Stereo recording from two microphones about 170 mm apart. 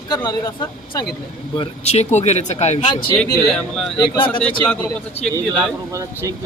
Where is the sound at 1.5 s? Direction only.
35° left (ahead or behind).